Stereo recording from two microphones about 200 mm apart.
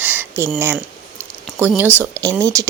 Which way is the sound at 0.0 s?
10° right (ahead or behind).